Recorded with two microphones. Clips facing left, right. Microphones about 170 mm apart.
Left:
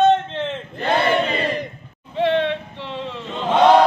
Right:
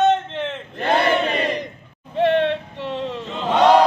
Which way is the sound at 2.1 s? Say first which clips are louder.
Right 1 dB; 50° right (ahead or behind).